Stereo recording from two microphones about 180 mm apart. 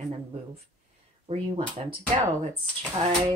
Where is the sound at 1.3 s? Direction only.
35° right (ahead or behind).